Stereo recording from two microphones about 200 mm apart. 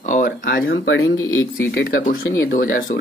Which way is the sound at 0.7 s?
80° left.